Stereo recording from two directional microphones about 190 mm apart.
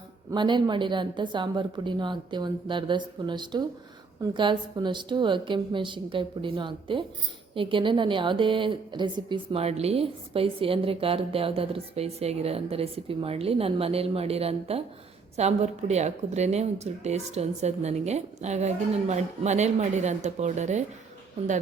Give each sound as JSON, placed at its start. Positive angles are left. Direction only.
{"t": 0.3, "sound": "a woman's voice", "side_deg": -25}